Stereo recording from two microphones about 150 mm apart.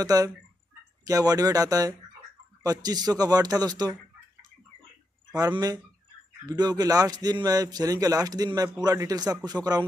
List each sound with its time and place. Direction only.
0.0 s speech: 25° right (ahead or behind)
5.3 s speech: 25° right (ahead or behind)